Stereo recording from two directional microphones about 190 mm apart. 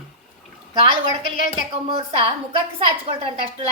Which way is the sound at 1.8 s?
30° right (ahead or behind).